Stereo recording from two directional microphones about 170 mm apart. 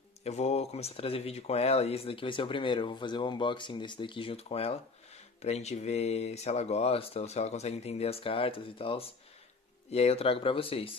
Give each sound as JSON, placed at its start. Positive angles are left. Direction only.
{"t": 0.2, "sound": "speech", "side_deg": 40}